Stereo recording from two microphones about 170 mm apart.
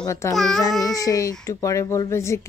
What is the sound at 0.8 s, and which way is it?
A child's voice, 20° left (ahead or behind).